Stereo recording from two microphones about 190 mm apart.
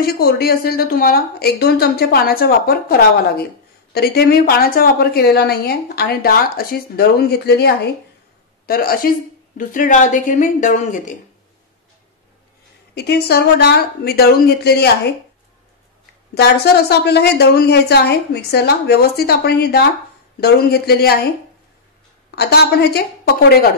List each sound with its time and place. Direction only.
0.0 s a woman's voice: 55° left (ahead or behind)
12.9 s a woman's voice: 60° left (ahead or behind)
16.3 s a woman's voice: 60° left (ahead or behind)
22.3 s a woman's voice: 60° left (ahead or behind)